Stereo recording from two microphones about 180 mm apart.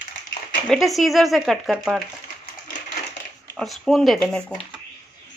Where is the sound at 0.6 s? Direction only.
Centre (ahead or behind).